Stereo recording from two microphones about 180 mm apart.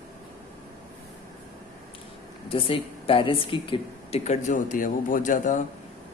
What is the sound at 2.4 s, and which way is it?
A woman's voice, 30° left (ahead or behind).